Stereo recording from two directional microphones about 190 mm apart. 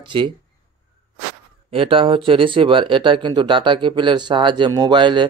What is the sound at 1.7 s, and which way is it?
Speech, 30° right (ahead or behind).